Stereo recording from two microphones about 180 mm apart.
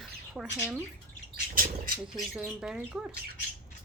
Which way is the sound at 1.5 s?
50° right (ahead or behind).